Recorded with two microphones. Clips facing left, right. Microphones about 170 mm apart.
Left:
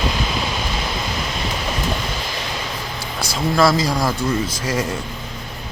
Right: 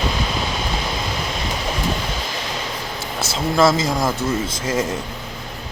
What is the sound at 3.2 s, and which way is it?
A man's voice, 25° right (ahead or behind).